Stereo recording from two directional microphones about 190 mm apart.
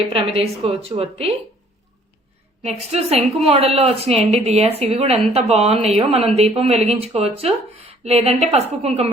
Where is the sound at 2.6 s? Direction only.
35° right (ahead or behind).